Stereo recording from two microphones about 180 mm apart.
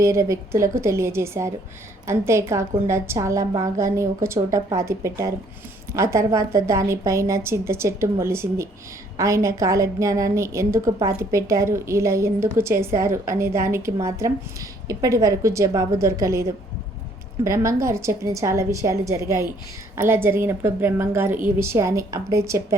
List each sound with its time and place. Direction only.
0.0 s a woman's voice: 15° right (ahead or behind)